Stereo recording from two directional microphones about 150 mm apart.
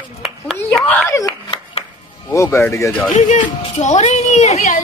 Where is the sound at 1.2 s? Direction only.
25° left (ahead or behind).